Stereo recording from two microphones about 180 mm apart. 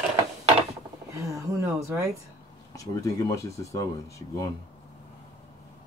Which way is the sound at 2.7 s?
20° left (ahead or behind).